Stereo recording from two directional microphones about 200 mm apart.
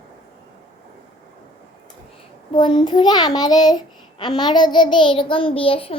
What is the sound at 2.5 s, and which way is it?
Child singing, 25° left (ahead or behind).